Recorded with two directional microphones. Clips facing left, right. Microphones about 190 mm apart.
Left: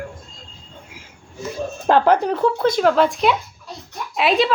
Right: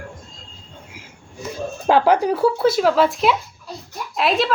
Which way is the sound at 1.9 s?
10° right (ahead or behind).